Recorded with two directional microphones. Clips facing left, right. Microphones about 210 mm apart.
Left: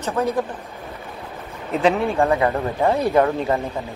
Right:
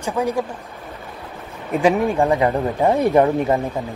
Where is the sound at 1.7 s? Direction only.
10° right (ahead or behind).